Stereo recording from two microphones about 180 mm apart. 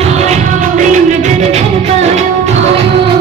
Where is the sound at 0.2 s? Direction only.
40° right (ahead or behind).